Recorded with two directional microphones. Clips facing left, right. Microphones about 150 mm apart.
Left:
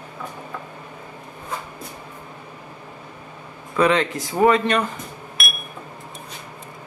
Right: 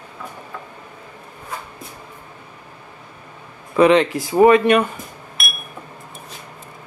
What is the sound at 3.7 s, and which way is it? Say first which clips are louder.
Speech: right 5 dB; 20° right (ahead or behind).